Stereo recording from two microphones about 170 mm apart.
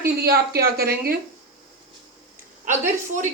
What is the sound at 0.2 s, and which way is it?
A woman's voice, 65° right (ahead or behind).